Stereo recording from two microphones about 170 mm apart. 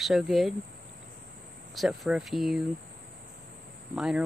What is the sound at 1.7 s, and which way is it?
Speech, centre (ahead or behind).